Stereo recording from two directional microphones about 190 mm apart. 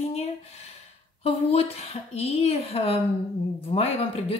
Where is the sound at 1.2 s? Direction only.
30° left (ahead or behind).